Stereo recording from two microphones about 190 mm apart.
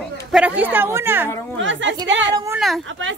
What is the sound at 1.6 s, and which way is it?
Speech, 75° right (ahead or behind).